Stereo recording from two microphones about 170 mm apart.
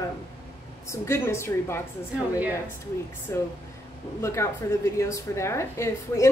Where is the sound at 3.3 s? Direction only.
20° left (ahead or behind).